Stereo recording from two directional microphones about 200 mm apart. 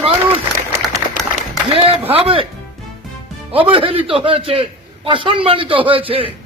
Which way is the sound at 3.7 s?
25° right (ahead or behind).